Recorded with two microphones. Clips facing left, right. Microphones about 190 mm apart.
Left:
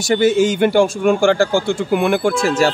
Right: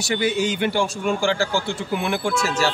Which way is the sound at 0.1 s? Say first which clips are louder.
Left 8 dB; 45° left (ahead or behind).